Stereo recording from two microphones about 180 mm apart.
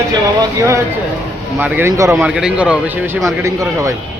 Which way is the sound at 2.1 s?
5° right (ahead or behind).